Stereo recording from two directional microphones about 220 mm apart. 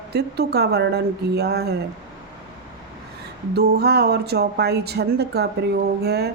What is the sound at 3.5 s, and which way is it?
Speech, 45° right (ahead or behind).